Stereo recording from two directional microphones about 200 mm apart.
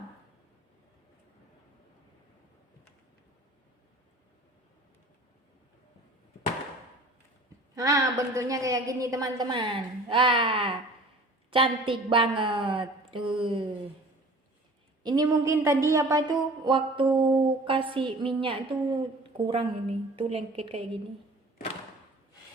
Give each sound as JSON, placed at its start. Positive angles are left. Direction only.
{"t": 7.8, "sound": "a woman's voice", "side_deg": -15}
{"t": 15.0, "sound": "a woman's voice", "side_deg": -20}